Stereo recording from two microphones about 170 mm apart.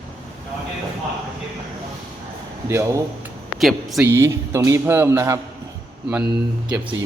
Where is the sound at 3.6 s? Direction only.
Centre (ahead or behind).